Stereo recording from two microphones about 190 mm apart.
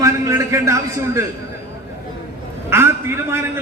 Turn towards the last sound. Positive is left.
turn(degrees=-10)  # may be behind; listen again after turning